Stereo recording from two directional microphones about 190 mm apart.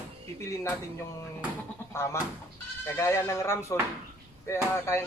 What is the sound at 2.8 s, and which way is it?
Music, 15° left (ahead or behind).